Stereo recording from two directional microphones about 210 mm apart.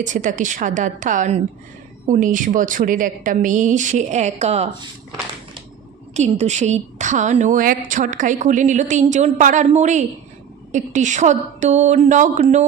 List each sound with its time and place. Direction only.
0.0 s a woman's voice: 35° right (ahead or behind)
6.1 s a woman's voice: 30° right (ahead or behind)